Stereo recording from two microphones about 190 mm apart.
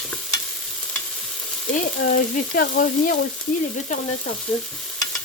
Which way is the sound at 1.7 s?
40° left (ahead or behind).